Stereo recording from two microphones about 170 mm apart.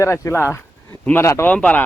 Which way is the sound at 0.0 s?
15° left (ahead or behind).